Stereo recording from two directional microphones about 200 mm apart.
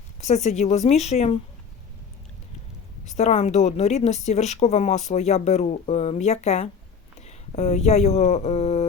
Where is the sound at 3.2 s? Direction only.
35° left (ahead or behind).